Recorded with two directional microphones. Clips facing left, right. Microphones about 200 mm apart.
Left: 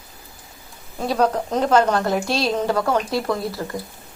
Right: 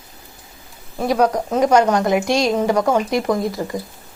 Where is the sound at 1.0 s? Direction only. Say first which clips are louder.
Right 3 dB; 10° right (ahead or behind).